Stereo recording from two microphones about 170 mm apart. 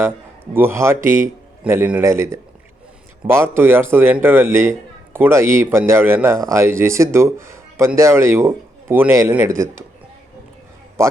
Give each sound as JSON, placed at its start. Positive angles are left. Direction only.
{"t": 0.5, "sound": "a man's voice", "side_deg": -15}
{"t": 11.0, "sound": "a man's voice", "side_deg": -15}